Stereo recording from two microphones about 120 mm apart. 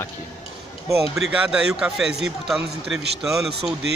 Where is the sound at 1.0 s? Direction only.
5° right (ahead or behind).